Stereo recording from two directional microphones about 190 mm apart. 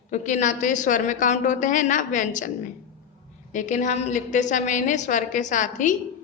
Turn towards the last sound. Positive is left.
turn(degrees=40)  # may be behind; listen again after turning